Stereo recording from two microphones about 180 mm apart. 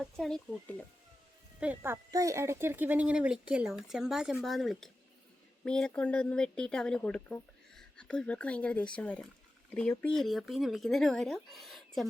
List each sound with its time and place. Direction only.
0.0 s speech: centre (ahead or behind)
1.5 s speech: 10° right (ahead or behind)